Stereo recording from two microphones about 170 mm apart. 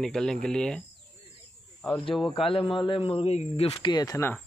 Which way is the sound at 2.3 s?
30° left (ahead or behind).